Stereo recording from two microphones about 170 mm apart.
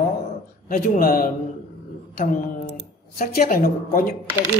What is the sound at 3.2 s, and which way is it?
Speech, 60° left (ahead or behind).